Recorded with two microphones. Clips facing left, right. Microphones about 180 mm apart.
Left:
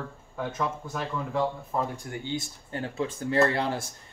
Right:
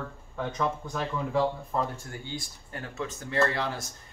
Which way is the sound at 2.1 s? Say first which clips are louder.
Left 5 dB; 20° left (ahead or behind).